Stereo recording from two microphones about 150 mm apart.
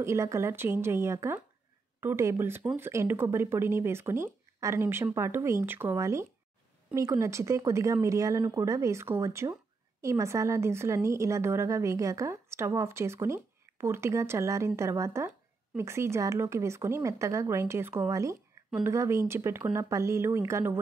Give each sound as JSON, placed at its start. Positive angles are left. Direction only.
{"t": 0.0, "sound": "a woman's voice", "side_deg": -20}